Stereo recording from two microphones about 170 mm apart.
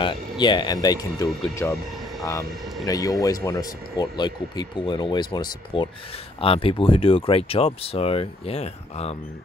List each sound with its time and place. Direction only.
0.0 s speech: 25° left (ahead or behind)
2.8 s speech: 20° left (ahead or behind); by 9.1 s 35° left (ahead or behind)